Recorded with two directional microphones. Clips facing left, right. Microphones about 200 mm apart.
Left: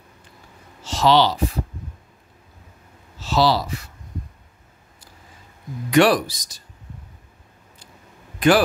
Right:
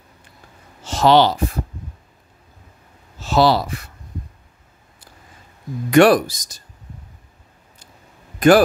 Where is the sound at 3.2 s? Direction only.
50° right (ahead or behind).